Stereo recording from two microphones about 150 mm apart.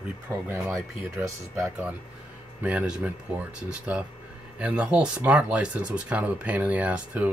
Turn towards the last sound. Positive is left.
turn(degrees=-10)  # may be behind; listen again after turning